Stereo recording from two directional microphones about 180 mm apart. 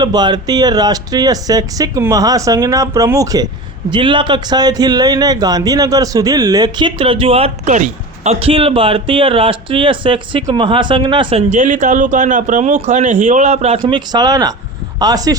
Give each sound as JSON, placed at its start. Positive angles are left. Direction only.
{"t": 0.0, "sound": "a man's voice", "side_deg": -25}